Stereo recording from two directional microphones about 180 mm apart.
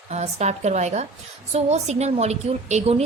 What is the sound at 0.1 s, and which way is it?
A woman's voice, 40° right (ahead or behind).